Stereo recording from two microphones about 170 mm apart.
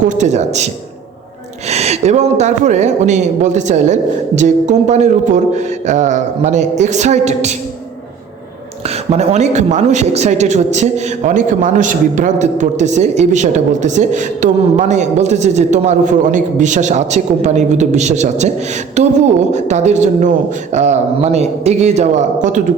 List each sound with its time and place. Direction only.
0.0 s speech: 45° right (ahead or behind)
1.7 s speech: 40° right (ahead or behind)
9.0 s speech: 40° right (ahead or behind)